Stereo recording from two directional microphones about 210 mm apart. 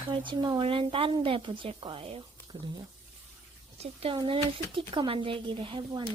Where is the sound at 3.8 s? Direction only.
25° right (ahead or behind).